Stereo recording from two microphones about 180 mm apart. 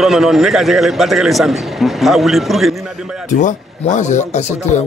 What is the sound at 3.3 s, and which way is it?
Speech, 45° left (ahead or behind).